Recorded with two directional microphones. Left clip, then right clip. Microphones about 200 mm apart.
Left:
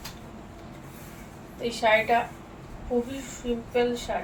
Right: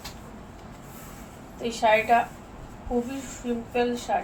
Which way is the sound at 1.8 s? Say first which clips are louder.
Right 1 dB; 20° left (ahead or behind).